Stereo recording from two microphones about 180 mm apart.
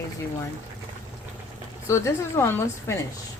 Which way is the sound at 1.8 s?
15° left (ahead or behind).